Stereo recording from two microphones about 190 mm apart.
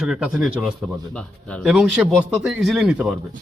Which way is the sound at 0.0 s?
5° right (ahead or behind).